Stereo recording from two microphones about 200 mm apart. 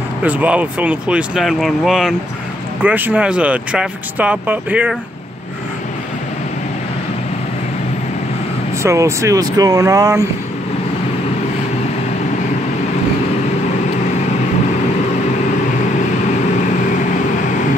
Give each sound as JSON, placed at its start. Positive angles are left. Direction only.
{"t": 0.2, "sound": "speech", "side_deg": -10}
{"t": 8.8, "sound": "speech", "side_deg": -15}